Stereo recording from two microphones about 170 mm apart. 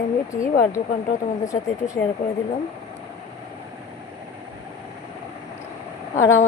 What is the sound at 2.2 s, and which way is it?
Speech, 50° left (ahead or behind).